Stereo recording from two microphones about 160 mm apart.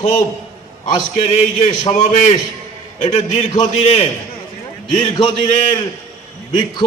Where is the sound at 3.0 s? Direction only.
40° left (ahead or behind).